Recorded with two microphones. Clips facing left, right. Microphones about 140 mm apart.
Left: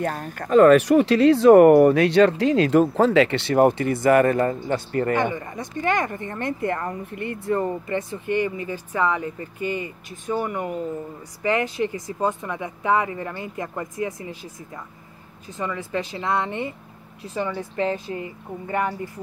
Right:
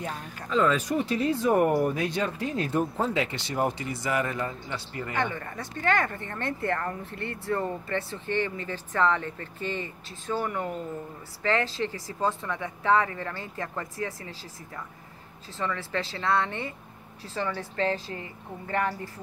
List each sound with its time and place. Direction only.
0.0 s speech: 50° left (ahead or behind)
5.1 s speech: 15° left (ahead or behind)